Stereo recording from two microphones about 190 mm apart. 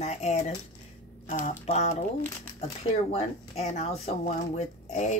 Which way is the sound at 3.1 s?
35° left (ahead or behind).